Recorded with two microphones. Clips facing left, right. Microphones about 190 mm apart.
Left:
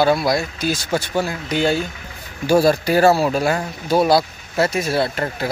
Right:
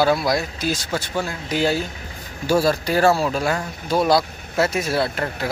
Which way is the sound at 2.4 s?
15° left (ahead or behind).